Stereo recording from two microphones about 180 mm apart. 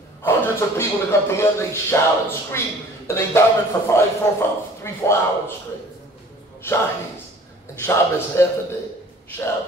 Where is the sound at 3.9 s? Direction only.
15° left (ahead or behind).